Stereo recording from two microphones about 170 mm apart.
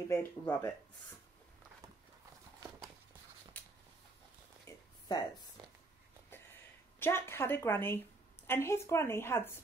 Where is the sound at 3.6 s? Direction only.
10° left (ahead or behind).